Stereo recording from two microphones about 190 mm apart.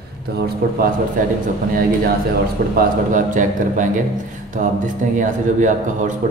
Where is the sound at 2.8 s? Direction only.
45° right (ahead or behind).